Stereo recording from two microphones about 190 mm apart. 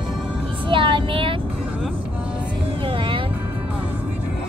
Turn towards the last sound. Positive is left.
turn(degrees=-25)  # may be behind; listen again after turning